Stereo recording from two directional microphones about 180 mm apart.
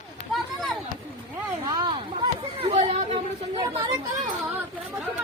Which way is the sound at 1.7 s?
25° right (ahead or behind).